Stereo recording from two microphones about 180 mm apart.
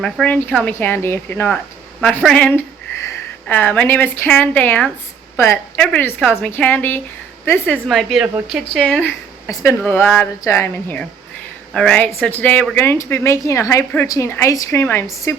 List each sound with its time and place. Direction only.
0.0 s a woman's voice: 5° left (ahead or behind)